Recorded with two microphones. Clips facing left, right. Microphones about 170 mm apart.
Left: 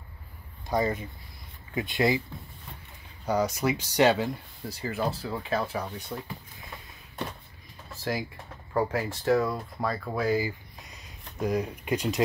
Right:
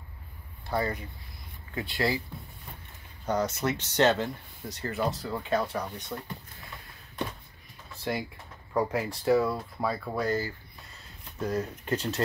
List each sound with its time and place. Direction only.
0.7 s speech: 20° left (ahead or behind)
3.3 s speech: 10° left (ahead or behind)
8.0 s speech: centre (ahead or behind)